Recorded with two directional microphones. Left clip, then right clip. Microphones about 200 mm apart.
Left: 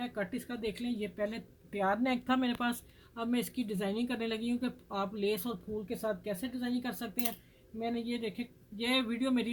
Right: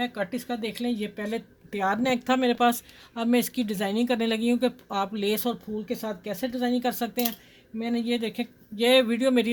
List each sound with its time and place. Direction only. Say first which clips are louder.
0.0 s speech: right 8 dB; 50° right (ahead or behind)